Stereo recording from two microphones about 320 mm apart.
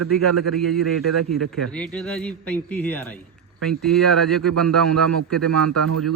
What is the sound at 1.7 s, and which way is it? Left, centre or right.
Speech, centre.